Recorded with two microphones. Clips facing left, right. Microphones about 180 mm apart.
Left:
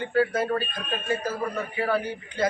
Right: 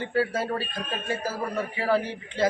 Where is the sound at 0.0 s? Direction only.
30° right (ahead or behind).